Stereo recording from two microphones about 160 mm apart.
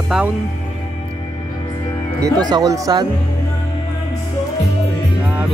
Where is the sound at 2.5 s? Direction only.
20° right (ahead or behind).